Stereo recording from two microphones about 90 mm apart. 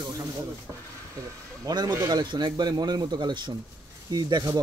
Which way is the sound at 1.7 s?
50° right (ahead or behind).